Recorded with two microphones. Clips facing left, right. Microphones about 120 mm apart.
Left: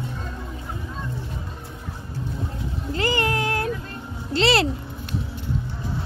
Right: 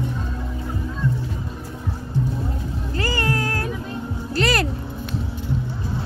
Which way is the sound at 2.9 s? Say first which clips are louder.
Left 1 dB; 20° left (ahead or behind).